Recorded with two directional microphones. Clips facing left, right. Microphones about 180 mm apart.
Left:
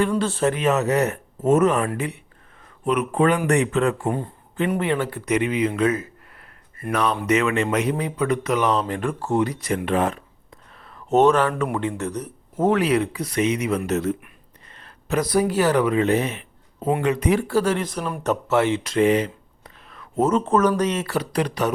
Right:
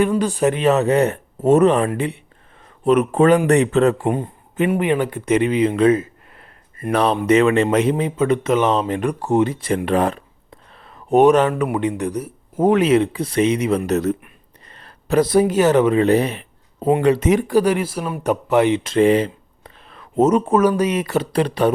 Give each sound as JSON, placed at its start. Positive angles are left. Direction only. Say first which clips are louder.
{"t": 0.2, "sound": "speech", "louder": "right 3 dB", "side_deg": -15}
{"t": 0.5, "sound": "a man's voice", "louder": "right 4 dB", "side_deg": -30}
{"t": 4.0, "sound": "speech", "louder": "right 4 dB", "side_deg": -20}
{"t": 11.1, "sound": "a man's voice", "louder": "right 4 dB", "side_deg": -15}
{"t": 17.2, "sound": "speech", "louder": "right 4 dB", "side_deg": -15}
{"t": 20.4, "sound": "speech", "louder": "right 3 dB", "side_deg": -10}
{"t": 21.2, "sound": "a man's voice", "louder": "right 6 dB", "side_deg": -30}